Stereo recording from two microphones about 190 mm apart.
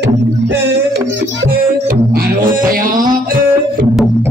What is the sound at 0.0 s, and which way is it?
Music, 60° right (ahead or behind).